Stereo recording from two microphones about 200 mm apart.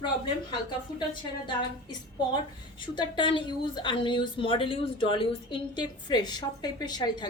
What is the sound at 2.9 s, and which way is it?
Speech, 25° left (ahead or behind).